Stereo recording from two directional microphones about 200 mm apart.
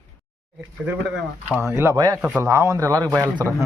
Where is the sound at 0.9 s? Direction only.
10° right (ahead or behind).